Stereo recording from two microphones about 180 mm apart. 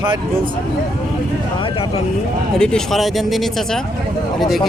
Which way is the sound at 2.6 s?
5° left (ahead or behind).